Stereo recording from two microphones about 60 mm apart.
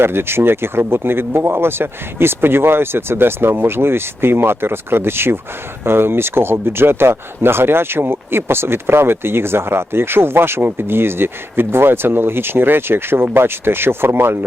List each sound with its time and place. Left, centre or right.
0.0 s speech: right